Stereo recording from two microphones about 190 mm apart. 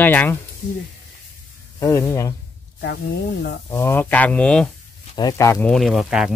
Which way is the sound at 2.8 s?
65° left (ahead or behind).